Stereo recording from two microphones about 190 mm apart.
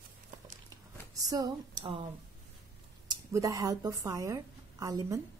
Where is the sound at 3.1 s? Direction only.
15° right (ahead or behind).